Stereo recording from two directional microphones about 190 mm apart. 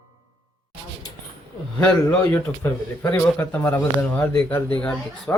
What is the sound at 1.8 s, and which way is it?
A man's voice, 5° left (ahead or behind).